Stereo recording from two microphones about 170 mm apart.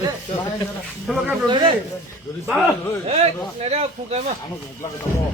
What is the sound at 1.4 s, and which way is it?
Speech, 25° right (ahead or behind).